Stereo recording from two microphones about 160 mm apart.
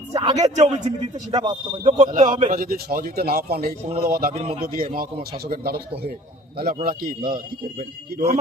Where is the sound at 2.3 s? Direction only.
30° right (ahead or behind).